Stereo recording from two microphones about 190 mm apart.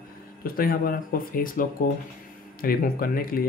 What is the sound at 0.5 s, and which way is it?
Speech, 50° left (ahead or behind).